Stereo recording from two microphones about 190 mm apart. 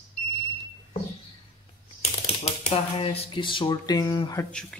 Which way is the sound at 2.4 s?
30° left (ahead or behind).